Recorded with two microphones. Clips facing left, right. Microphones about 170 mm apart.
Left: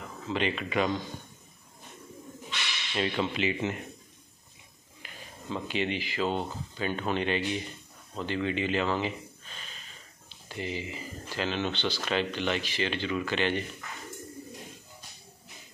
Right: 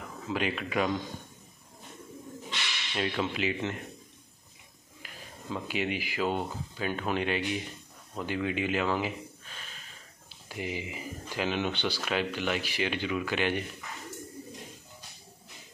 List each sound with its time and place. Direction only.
0.3 s speech: 5° right (ahead or behind)
2.9 s speech: centre (ahead or behind)
5.0 s speech: 5° right (ahead or behind)